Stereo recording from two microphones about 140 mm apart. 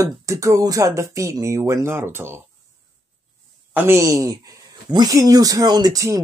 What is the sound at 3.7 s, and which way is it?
Speech, 20° right (ahead or behind).